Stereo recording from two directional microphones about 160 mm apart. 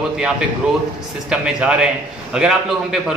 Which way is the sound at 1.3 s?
5° right (ahead or behind).